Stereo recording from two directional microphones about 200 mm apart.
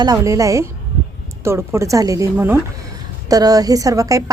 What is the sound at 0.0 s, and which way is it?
A woman's voice, 15° right (ahead or behind).